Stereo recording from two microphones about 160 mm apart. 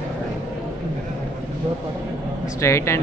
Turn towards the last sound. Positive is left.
turn(degrees=15)  # may be behind; listen again after turning